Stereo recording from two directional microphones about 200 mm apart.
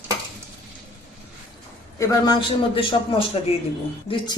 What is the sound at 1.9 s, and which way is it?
A man's voice, 20° left (ahead or behind).